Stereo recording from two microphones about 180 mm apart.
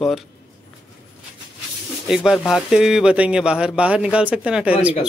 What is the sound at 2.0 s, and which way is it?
A man's voice, centre (ahead or behind).